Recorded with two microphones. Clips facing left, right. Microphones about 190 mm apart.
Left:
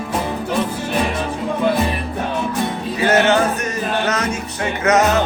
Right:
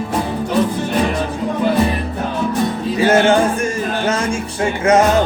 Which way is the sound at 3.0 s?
30° right (ahead or behind).